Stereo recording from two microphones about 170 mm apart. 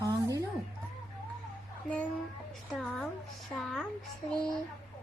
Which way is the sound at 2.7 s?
Centre (ahead or behind).